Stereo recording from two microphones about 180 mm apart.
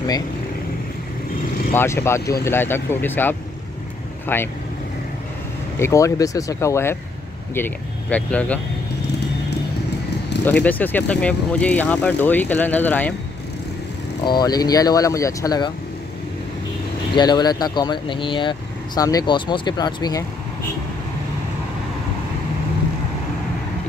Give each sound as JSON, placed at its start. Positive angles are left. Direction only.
{"t": 1.7, "sound": "speech", "side_deg": 15}
{"t": 5.8, "sound": "speech", "side_deg": 15}
{"t": 10.6, "sound": "speech", "side_deg": 10}
{"t": 14.2, "sound": "speech", "side_deg": 25}
{"t": 17.1, "sound": "speech", "side_deg": 25}